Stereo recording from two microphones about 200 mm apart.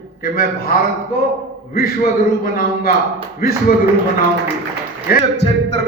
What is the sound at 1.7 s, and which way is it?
A man's voice, 50° left (ahead or behind).